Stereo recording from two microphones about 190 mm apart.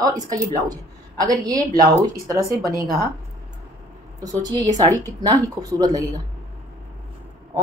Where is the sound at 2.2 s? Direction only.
15° right (ahead or behind).